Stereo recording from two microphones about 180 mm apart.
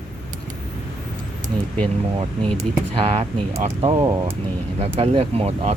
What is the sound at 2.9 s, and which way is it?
Speech, 35° right (ahead or behind).